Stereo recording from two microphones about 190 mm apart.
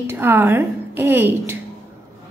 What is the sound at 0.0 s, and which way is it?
A woman's voice, 10° right (ahead or behind).